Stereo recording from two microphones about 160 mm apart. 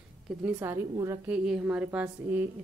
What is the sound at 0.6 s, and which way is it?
Speech, 15° right (ahead or behind).